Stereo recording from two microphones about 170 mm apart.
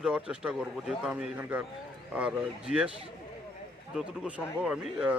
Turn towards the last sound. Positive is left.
turn(degrees=-5)  # may be behind; listen again after turning